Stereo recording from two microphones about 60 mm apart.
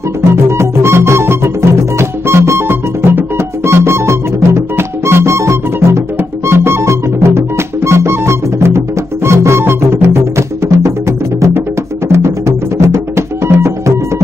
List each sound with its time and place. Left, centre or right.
0.5 s music: right